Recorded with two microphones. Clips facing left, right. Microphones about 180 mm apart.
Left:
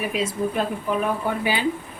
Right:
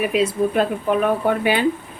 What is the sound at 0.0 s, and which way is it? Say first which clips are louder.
Speech: right 6 dB; 65° right (ahead or behind).